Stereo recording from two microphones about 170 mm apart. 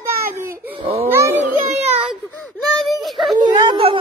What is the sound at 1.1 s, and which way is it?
Speech, 15° right (ahead or behind).